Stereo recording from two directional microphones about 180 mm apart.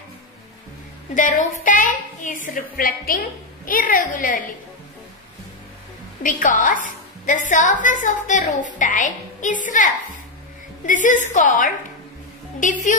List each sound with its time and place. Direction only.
1.1 s a woman's voice: 45° left (ahead or behind)
6.2 s a woman's voice: 45° left (ahead or behind)
10.9 s a woman's voice: 45° left (ahead or behind)